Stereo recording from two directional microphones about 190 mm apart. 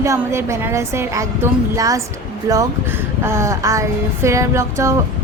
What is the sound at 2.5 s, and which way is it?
A woman's voice, 15° right (ahead or behind).